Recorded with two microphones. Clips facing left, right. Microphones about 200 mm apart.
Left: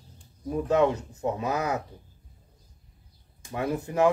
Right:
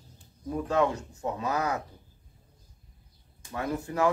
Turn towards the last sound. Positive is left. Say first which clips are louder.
# left 3 dB
turn(degrees=20)  # may be behind; listen again after turning